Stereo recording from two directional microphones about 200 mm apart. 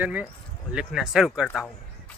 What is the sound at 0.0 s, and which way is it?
Speech, 10° right (ahead or behind).